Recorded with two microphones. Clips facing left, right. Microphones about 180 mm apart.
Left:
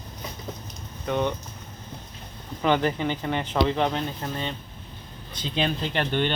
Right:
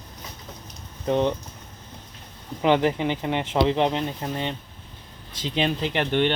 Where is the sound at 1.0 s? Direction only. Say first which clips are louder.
Right 4 dB; 30° right (ahead or behind).